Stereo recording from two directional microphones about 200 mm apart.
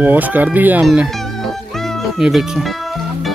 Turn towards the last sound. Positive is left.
turn(degrees=0)  # may be behind; listen again after turning